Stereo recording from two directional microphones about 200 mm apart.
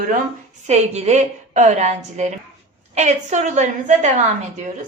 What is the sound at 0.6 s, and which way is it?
A woman's voice, 35° right (ahead or behind).